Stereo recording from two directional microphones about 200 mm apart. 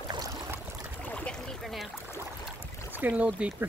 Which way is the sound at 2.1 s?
15° left (ahead or behind).